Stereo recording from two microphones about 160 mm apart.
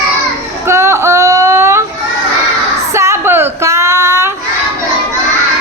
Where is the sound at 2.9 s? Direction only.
15° right (ahead or behind).